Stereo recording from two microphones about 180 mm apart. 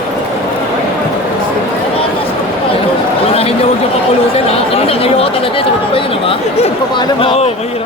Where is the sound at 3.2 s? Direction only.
35° left (ahead or behind).